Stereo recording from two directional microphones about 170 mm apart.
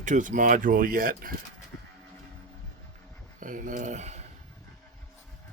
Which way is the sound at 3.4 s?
50° right (ahead or behind).